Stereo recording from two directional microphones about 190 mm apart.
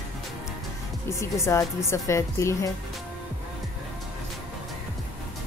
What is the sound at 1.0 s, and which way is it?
Speech, 15° left (ahead or behind).